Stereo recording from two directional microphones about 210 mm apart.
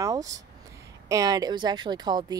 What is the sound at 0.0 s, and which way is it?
Speech, 15° right (ahead or behind).